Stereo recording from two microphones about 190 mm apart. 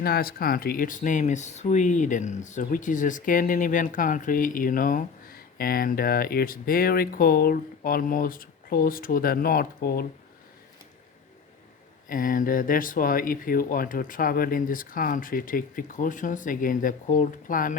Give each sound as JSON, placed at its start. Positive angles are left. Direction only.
{"t": 0.0, "sound": "speech", "side_deg": 55}
{"t": 12.0, "sound": "speech", "side_deg": 45}